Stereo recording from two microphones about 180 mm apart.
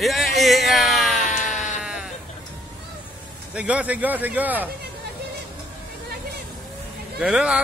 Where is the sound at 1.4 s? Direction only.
45° left (ahead or behind).